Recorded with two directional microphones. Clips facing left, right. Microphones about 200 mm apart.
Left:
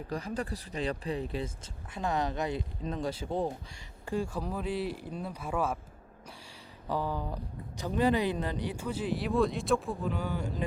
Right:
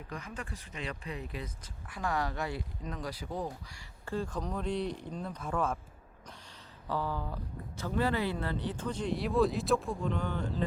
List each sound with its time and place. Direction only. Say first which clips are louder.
0.1 s speech: left 8 dB; 35° left (ahead or behind)
4.0 s speech: left 2 dB; 15° left (ahead or behind)
6.8 s speech: left 2 dB; 15° left (ahead or behind)